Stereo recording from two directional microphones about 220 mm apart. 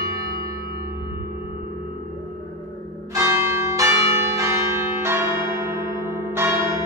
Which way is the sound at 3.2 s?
10° right (ahead or behind).